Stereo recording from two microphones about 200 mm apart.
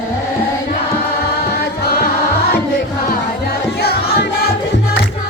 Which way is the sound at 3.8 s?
50° left (ahead or behind).